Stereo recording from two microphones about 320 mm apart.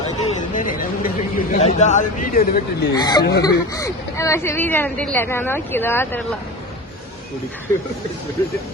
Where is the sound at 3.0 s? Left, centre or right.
Centre.